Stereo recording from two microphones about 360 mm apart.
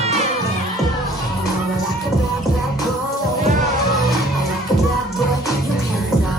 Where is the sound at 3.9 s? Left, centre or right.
Centre.